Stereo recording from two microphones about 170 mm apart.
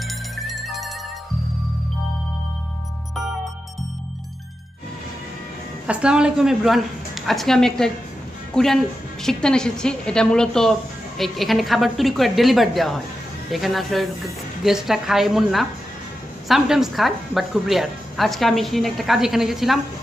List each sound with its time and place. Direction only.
0.1 s music: centre (ahead or behind)
5.9 s a woman's voice: 5° right (ahead or behind)